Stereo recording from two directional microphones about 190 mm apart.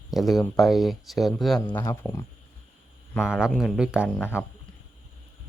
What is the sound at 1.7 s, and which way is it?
Speech, 15° left (ahead or behind).